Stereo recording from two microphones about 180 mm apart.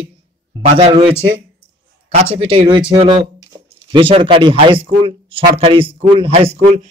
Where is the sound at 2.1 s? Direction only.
35° right (ahead or behind).